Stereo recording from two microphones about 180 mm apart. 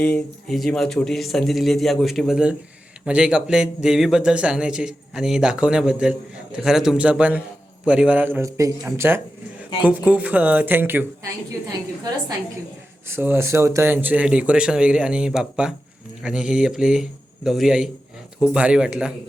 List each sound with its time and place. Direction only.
0.0 s speech: 5° left (ahead or behind); by 11.0 s 10° right (ahead or behind)
13.1 s speech: 15° right (ahead or behind)